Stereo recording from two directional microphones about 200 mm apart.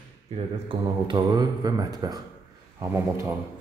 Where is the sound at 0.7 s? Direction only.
20° right (ahead or behind).